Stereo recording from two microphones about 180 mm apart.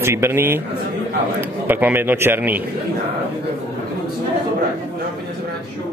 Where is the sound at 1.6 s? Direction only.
10° right (ahead or behind).